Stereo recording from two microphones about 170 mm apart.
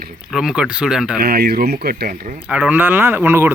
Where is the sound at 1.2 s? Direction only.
65° right (ahead or behind).